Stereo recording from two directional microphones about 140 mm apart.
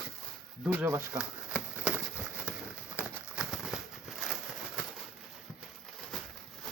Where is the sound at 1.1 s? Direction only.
5° right (ahead or behind).